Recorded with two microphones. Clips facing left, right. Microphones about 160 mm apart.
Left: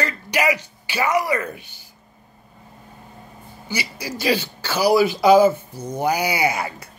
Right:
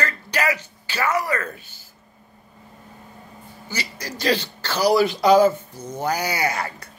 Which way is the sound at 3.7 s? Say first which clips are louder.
Left 3 dB; 10° left (ahead or behind).